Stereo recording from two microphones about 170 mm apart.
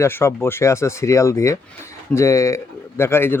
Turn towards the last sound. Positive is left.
turn(degrees=15)  # may be behind; listen again after turning